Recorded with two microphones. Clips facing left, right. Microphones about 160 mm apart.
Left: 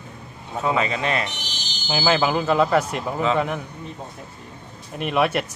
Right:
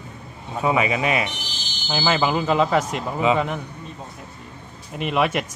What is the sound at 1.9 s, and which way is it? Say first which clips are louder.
Speech: left 1 dB; centre (ahead or behind).